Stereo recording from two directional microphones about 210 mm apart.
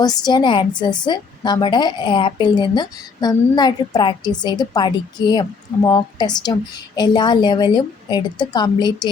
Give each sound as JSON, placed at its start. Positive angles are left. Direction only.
{"t": 0.0, "sound": "a woman's voice", "side_deg": 20}